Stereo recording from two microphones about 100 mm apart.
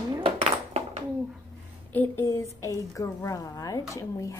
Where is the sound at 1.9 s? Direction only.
15° left (ahead or behind).